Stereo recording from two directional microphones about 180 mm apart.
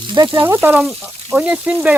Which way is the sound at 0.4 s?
10° right (ahead or behind).